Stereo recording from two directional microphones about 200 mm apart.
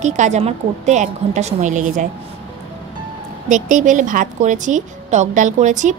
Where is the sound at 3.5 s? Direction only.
40° right (ahead or behind).